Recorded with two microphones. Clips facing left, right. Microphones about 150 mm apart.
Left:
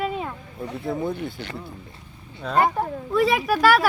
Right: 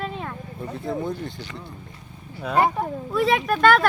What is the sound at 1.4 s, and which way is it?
Speech, 60° left (ahead or behind).